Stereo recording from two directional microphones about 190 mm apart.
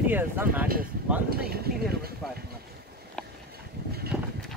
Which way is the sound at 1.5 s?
55° right (ahead or behind).